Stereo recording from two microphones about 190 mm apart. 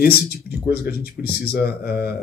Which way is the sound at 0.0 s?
55° left (ahead or behind).